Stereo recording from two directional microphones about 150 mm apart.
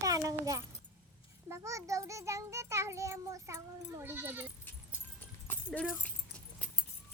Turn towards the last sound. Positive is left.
turn(degrees=10)  # may be behind; listen again after turning